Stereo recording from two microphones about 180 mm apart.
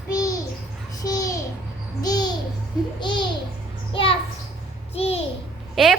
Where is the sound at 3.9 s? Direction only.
30° left (ahead or behind).